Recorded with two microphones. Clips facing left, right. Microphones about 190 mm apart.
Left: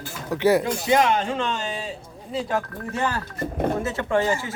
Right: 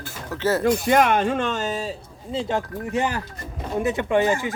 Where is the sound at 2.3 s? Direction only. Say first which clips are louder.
Right 1 dB; 20° right (ahead or behind).